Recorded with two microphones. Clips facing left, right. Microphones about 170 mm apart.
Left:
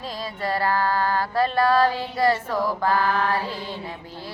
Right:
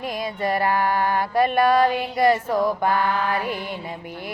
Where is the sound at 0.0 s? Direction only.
20° right (ahead or behind).